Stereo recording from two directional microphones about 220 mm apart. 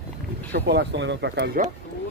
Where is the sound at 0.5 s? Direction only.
50° right (ahead or behind).